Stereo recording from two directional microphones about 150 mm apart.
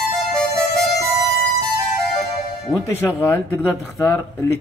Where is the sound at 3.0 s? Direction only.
10° left (ahead or behind).